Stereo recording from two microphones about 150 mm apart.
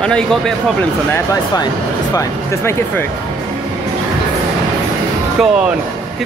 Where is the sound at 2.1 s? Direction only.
20° left (ahead or behind).